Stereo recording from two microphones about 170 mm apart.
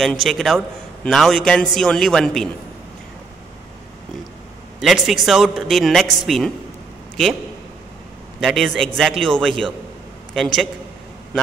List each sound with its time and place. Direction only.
0.0 s a man's voice: centre (ahead or behind)
4.7 s a man's voice: centre (ahead or behind)
8.4 s a man's voice: centre (ahead or behind)